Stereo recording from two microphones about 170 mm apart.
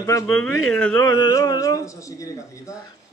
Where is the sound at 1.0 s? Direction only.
20° left (ahead or behind).